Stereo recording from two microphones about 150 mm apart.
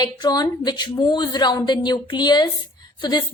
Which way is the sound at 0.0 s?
30° left (ahead or behind).